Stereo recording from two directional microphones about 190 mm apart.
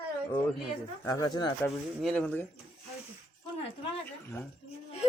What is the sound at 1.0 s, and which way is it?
Speech, 20° left (ahead or behind).